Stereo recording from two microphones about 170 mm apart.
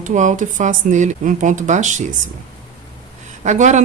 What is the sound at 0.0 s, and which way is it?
Speech, 45° right (ahead or behind).